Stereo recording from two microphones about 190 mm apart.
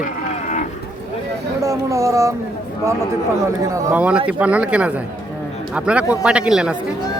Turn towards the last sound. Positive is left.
turn(degrees=-5)  # may be behind; listen again after turning